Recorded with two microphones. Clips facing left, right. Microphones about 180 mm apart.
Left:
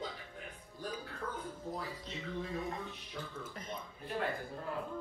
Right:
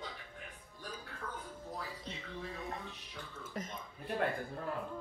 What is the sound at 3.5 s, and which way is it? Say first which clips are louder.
Speech: right 5 dB; 40° right (ahead or behind).